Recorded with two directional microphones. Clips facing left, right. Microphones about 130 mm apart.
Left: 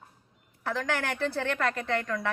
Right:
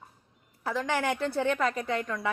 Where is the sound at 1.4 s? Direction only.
15° right (ahead or behind).